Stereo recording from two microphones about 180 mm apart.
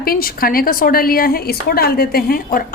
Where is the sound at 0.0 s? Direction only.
55° left (ahead or behind).